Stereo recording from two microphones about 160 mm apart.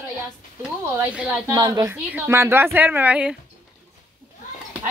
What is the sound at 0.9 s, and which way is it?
Speech, 10° right (ahead or behind).